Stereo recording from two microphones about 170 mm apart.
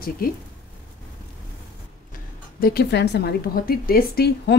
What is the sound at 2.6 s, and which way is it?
A woman's voice, 75° left (ahead or behind).